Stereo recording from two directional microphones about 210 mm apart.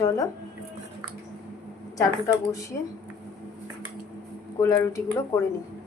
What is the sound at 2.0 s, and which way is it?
Speech, 15° left (ahead or behind).